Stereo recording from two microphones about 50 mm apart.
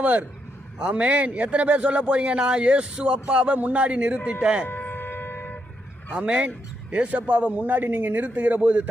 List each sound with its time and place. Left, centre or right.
0.0 s a man's voice: right
4.7 s shofar: left
6.1 s a man's voice: right